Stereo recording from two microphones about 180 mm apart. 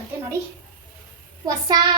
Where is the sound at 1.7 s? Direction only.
20° right (ahead or behind).